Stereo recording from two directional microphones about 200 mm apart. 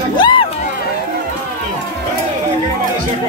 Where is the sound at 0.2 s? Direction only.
25° left (ahead or behind).